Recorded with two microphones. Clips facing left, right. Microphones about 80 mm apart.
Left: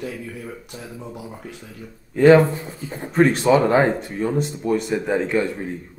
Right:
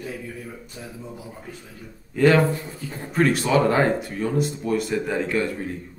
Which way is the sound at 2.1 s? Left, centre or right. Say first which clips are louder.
Left 5 dB; left.